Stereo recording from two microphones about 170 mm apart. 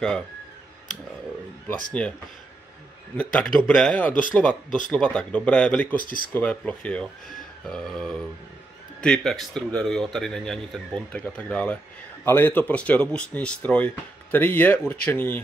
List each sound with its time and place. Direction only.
2.0 s speech: 10° left (ahead or behind)
3.2 s speech: 5° left (ahead or behind)
5.9 s speech: 55° left (ahead or behind)
6.3 s speech: 5° left (ahead or behind)